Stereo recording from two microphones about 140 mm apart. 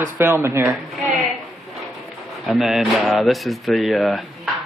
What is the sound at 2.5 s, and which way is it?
Speech, centre (ahead or behind).